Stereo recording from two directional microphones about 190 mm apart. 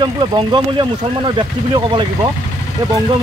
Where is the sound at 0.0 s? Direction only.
20° right (ahead or behind).